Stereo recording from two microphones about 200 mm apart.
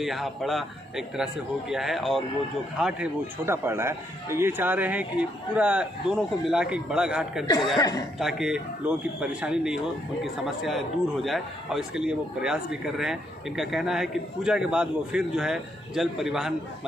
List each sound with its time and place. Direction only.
0.0 s a man's voice: centre (ahead or behind)